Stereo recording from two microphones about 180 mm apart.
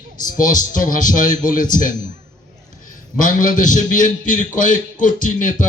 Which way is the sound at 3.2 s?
45° left (ahead or behind).